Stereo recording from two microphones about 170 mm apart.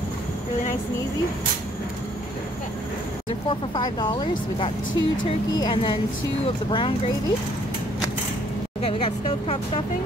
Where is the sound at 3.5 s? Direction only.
25° left (ahead or behind).